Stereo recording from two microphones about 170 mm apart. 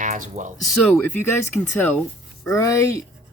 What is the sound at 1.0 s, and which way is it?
Speech, 10° left (ahead or behind).